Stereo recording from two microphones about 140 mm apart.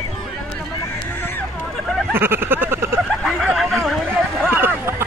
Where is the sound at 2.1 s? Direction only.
15° right (ahead or behind).